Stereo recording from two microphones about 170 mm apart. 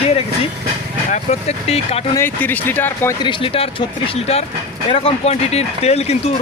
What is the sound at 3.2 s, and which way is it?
Speech, 30° left (ahead or behind).